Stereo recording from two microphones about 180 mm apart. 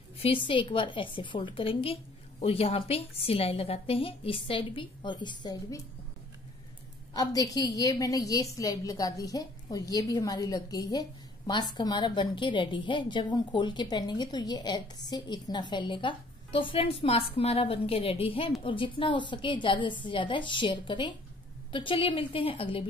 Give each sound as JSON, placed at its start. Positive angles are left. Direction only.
{"t": 0.2, "sound": "a woman's voice", "side_deg": 30}
{"t": 7.2, "sound": "a woman's voice", "side_deg": 20}